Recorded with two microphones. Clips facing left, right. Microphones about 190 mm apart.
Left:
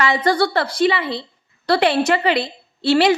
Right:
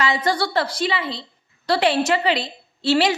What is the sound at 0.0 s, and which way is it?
A woman's voice, 60° left (ahead or behind).